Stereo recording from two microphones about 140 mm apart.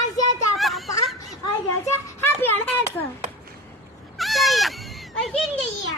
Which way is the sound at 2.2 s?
15° left (ahead or behind).